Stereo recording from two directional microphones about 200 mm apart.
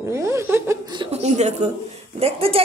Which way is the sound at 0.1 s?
15° right (ahead or behind).